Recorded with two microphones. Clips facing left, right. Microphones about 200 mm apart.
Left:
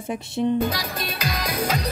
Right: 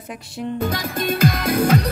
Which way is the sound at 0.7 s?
50° right (ahead or behind).